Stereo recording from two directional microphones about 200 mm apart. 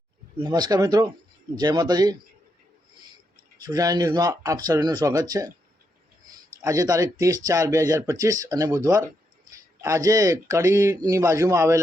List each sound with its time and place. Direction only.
0.3 s speech: 20° right (ahead or behind)
3.7 s speech: 20° right (ahead or behind)
6.6 s speech: 15° right (ahead or behind)